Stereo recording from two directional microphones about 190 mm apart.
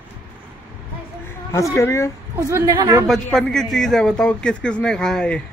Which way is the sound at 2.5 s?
15° right (ahead or behind).